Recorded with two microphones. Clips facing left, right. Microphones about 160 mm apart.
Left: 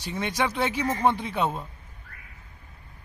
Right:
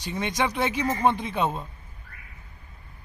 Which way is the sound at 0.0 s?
15° right (ahead or behind).